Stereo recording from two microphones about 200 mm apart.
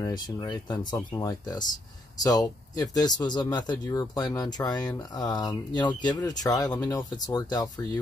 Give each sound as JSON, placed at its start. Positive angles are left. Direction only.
{"t": 0.0, "sound": "speech", "side_deg": 20}